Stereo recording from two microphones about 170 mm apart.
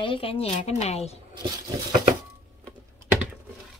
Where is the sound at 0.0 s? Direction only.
30° left (ahead or behind).